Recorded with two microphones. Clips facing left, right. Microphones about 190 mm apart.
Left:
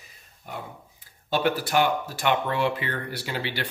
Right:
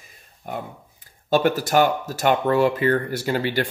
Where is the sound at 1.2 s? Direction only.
45° right (ahead or behind).